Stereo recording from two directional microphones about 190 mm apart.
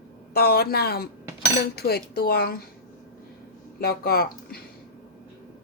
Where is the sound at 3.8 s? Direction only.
55° left (ahead or behind).